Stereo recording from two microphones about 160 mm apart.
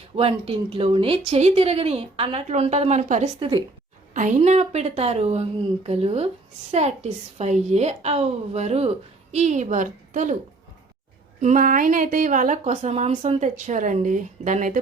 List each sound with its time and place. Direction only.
0.2 s a woman's voice: 35° right (ahead or behind); by 10.3 s 50° right (ahead or behind)
11.3 s a woman's voice: 50° right (ahead or behind)